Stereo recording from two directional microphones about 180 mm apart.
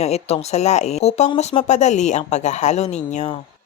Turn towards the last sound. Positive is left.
turn(degrees=40)  # may be behind; listen again after turning